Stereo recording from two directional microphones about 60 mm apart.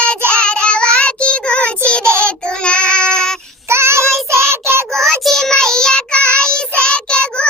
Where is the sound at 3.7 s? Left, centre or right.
Right.